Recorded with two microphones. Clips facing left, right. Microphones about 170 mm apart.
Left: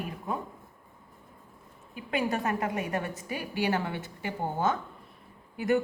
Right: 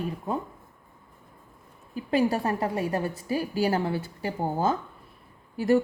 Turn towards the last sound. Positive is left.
turn(degrees=-35)  # may be behind; listen again after turning